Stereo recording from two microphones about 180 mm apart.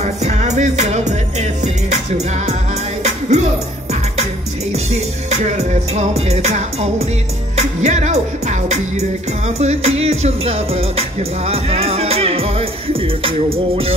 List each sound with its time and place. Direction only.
0.0 s music: 40° right (ahead or behind)
4.9 s music: 40° right (ahead or behind)